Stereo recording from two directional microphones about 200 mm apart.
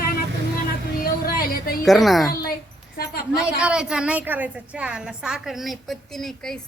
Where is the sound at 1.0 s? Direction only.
50° left (ahead or behind).